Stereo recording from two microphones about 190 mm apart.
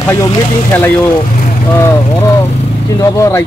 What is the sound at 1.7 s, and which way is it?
Speech, 15° left (ahead or behind).